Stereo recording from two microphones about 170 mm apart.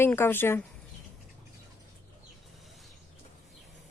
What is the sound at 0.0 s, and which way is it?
Speech, 15° left (ahead or behind).